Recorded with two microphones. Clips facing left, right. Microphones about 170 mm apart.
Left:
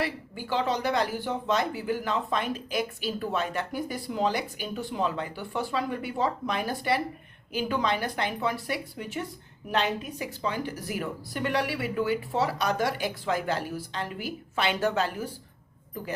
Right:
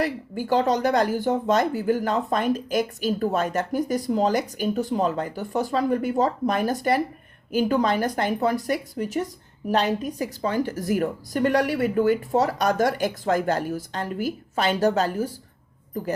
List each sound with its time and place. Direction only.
0.0 s speech: 45° right (ahead or behind)